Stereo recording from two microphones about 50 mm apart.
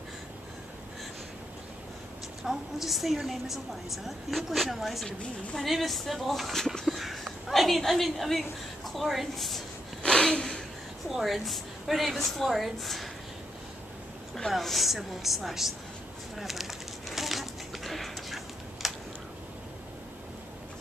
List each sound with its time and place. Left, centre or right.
2.4 s a woman's voice: centre
5.0 s a woman's voice: centre
6.9 s a woman's voice: centre
10.0 s gasp: centre
11.1 s a woman's voice: centre
14.5 s a woman's voice: centre
16.3 s a sound: centre